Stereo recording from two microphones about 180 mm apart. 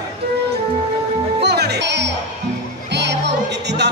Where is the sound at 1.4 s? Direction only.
65° right (ahead or behind).